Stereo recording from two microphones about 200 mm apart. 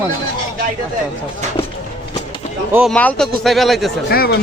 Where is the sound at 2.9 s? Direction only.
5° left (ahead or behind).